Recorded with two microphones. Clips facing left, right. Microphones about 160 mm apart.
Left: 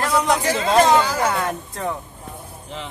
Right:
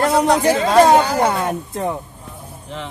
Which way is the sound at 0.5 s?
50° right (ahead or behind).